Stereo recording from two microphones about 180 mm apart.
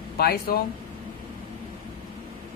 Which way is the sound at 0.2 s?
55° left (ahead or behind).